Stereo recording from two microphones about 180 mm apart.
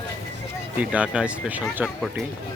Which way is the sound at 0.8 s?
5° right (ahead or behind).